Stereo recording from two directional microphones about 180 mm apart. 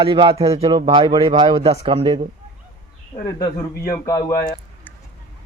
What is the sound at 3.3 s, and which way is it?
A man's voice, 20° left (ahead or behind).